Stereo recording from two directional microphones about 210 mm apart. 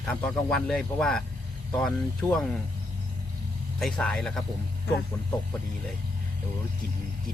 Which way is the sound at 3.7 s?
Centre (ahead or behind).